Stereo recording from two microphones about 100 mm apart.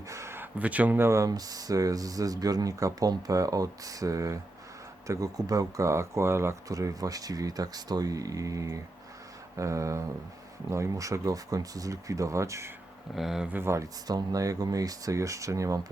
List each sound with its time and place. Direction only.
0.1 s a sound: 25° right (ahead or behind)
0.6 s speech: 15° right (ahead or behind); by 12.7 s 30° right (ahead or behind)
13.1 s speech: 5° right (ahead or behind)
13.5 s speech: 25° right (ahead or behind)
14.1 s speech: 35° right (ahead or behind)